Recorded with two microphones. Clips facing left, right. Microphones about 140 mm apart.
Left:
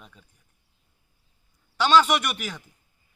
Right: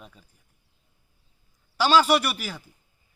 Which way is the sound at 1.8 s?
5° right (ahead or behind).